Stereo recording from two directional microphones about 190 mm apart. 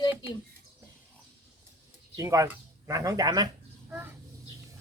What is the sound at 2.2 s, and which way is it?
Speech, 15° right (ahead or behind).